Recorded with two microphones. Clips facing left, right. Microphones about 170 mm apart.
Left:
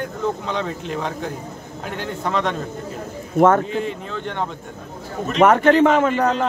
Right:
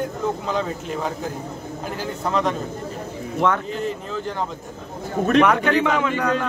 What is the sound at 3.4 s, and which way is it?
Speech, 45° left (ahead or behind).